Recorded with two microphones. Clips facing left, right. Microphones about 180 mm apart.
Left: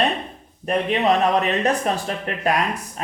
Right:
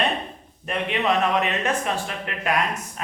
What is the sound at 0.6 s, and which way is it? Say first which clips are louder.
Speech: left 5 dB; 35° left (ahead or behind).